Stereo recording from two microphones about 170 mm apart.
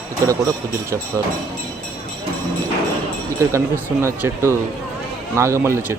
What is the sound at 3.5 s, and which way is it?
Speech, 15° right (ahead or behind).